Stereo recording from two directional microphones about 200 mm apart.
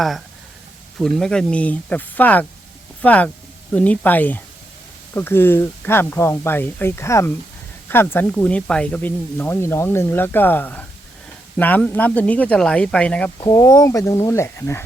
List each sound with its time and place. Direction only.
0.9 s speech: centre (ahead or behind)
13.4 s speech: 15° left (ahead or behind)